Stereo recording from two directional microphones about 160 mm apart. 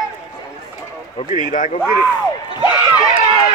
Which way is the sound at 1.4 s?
55° left (ahead or behind).